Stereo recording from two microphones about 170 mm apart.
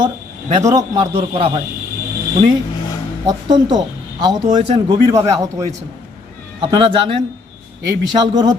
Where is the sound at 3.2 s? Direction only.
25° right (ahead or behind).